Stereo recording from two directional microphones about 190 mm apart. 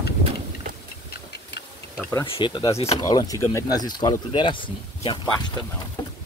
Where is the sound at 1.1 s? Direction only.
60° left (ahead or behind).